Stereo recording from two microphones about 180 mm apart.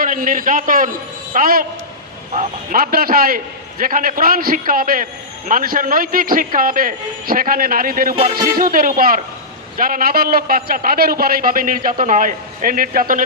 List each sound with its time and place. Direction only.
0.0 s a man's voice: 50° right (ahead or behind)